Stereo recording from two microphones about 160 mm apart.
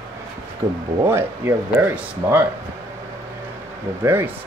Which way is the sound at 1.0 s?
15° right (ahead or behind).